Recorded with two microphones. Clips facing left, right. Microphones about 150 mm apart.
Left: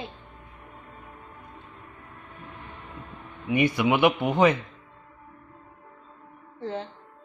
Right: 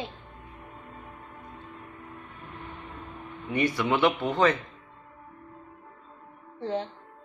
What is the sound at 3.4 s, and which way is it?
A man's voice, 15° left (ahead or behind).